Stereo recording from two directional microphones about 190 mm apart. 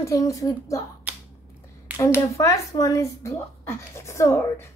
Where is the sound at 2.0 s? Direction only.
15° left (ahead or behind).